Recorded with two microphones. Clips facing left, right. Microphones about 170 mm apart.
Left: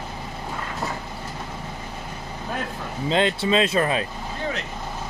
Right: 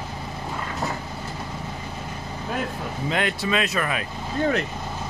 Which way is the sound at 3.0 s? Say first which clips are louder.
Left 4 dB; 25° left (ahead or behind).